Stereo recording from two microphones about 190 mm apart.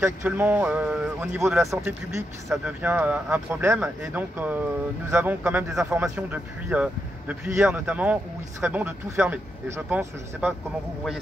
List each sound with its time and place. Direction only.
0.0 s speech: 10° right (ahead or behind)